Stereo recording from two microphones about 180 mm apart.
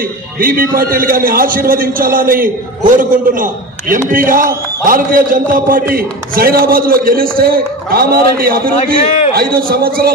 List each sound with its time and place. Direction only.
0.4 s a man's voice: 55° right (ahead or behind)
8.7 s a man's voice: 40° left (ahead or behind)
9.3 s a man's voice: 55° right (ahead or behind)